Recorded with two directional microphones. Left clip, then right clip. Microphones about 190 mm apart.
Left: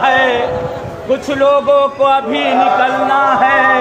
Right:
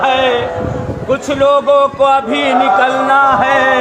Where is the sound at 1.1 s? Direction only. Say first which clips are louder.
Even; 10° right (ahead or behind); by 2.9 s 30° right (ahead or behind).